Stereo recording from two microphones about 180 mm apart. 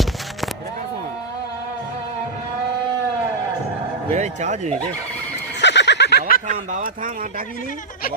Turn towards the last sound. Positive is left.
turn(degrees=-45)  # may be behind; listen again after turning